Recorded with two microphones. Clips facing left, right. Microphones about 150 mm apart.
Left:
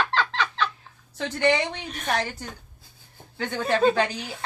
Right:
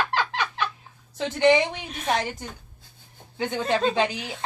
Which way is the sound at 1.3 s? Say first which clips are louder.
Right 4 dB; 15° right (ahead or behind).